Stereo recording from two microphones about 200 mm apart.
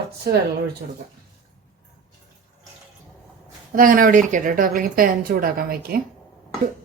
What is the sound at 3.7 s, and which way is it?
A woman's voice, 45° right (ahead or behind).